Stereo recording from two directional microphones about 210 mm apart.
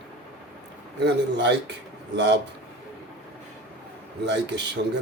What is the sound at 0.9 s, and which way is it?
Speech, 55° right (ahead or behind).